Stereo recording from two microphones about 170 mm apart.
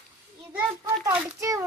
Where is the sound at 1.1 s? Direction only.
20° right (ahead or behind).